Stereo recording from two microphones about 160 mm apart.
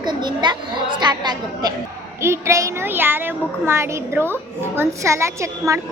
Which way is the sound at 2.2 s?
15° right (ahead or behind).